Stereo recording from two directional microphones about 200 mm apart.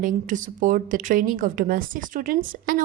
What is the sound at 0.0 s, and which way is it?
Speech, 40° right (ahead or behind).